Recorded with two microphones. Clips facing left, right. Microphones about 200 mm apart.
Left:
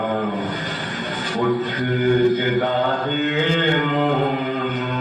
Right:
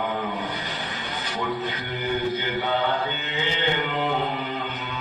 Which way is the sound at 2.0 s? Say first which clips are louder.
Left 9 dB; 50° left (ahead or behind).